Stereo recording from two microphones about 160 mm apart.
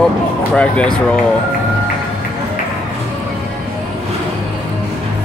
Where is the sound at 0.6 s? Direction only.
5° left (ahead or behind).